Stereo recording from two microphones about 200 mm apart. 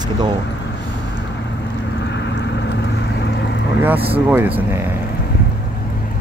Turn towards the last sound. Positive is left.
turn(degrees=-10)  # may be behind; listen again after turning